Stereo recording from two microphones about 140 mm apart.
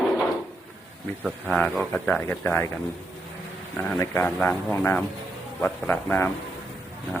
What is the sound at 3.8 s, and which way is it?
A man's voice, 15° left (ahead or behind).